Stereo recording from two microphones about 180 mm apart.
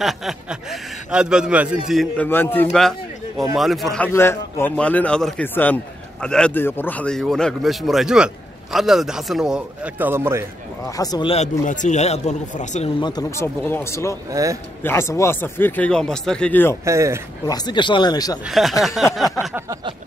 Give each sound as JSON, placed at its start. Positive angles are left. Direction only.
{"t": 0.0, "sound": "speech", "side_deg": 0}
{"t": 2.2, "sound": "speech", "side_deg": 10}
{"t": 3.5, "sound": "speech", "side_deg": 0}
{"t": 4.1, "sound": "speech", "side_deg": 15}
{"t": 11.0, "sound": "speech", "side_deg": 25}
{"t": 11.3, "sound": "a man's voice", "side_deg": 40}
{"t": 13.0, "sound": "speech", "side_deg": 20}
{"t": 14.3, "sound": "speech", "side_deg": -20}
{"t": 14.8, "sound": "speech", "side_deg": 15}
{"t": 16.8, "sound": "speech", "side_deg": -15}
{"t": 17.5, "sound": "speech", "side_deg": 25}
{"t": 18.5, "sound": "speech", "side_deg": 0}